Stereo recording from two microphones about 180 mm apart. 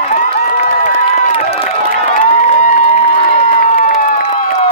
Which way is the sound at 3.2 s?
30° left (ahead or behind).